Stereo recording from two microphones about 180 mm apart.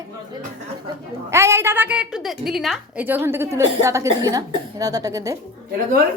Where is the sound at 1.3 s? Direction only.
15° right (ahead or behind).